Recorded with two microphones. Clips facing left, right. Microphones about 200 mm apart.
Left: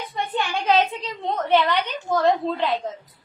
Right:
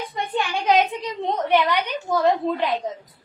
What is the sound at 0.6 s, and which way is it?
A woman's voice, 15° right (ahead or behind).